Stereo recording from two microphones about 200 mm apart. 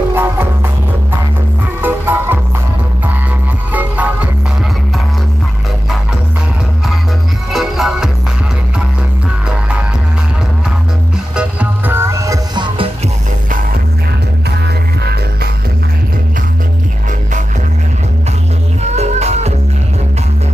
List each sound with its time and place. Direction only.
0.1 s music: 10° right (ahead or behind)
1.8 s music: 10° right (ahead or behind)
3.7 s music: 5° right (ahead or behind)
7.5 s music: centre (ahead or behind)
11.3 s music: 10° right (ahead or behind)
18.8 s music: 35° right (ahead or behind)